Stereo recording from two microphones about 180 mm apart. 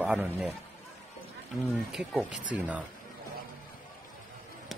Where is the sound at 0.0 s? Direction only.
10° right (ahead or behind).